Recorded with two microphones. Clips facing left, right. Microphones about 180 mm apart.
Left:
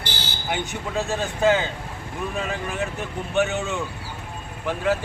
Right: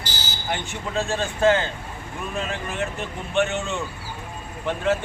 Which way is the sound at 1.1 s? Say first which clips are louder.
Right 1 dB; 10° left (ahead or behind).